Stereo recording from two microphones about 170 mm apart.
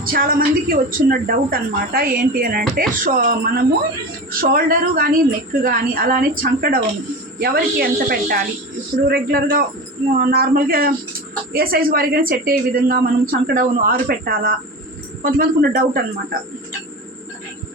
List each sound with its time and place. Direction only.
0.0 s a woman's voice: 60° right (ahead or behind)